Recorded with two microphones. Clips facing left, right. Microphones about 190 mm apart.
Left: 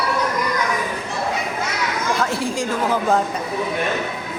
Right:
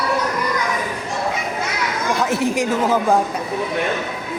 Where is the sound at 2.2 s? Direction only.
20° right (ahead or behind).